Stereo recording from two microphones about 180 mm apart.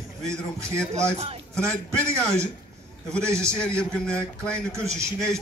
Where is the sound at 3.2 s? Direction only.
15° right (ahead or behind).